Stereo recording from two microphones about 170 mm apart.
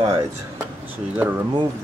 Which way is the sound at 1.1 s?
10° right (ahead or behind).